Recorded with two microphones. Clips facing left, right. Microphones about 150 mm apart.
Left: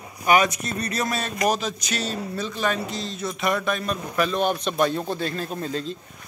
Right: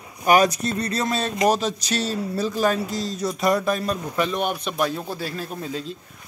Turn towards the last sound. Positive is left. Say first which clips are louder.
# left 2 dB
turn(degrees=-5)  # may be behind; listen again after turning